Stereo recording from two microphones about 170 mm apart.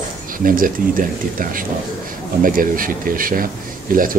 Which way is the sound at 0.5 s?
55° right (ahead or behind).